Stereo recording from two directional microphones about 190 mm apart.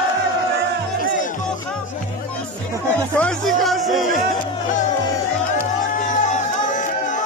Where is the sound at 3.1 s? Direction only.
5° left (ahead or behind).